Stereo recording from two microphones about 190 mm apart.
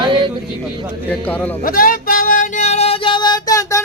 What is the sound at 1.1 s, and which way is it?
Speech, 10° left (ahead or behind).